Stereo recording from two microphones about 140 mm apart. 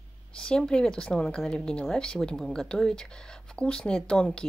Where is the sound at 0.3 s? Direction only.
5° left (ahead or behind).